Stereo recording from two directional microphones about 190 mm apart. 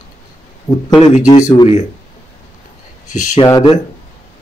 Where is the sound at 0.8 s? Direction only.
25° left (ahead or behind).